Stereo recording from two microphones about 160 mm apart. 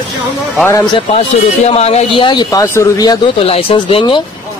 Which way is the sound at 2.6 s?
20° left (ahead or behind).